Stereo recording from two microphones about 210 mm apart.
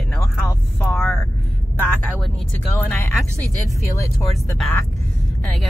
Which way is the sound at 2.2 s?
10° left (ahead or behind).